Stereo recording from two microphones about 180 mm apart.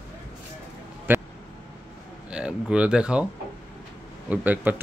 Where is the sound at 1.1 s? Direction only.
10° right (ahead or behind).